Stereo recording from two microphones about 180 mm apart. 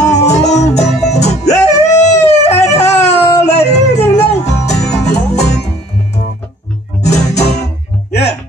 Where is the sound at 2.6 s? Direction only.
35° left (ahead or behind).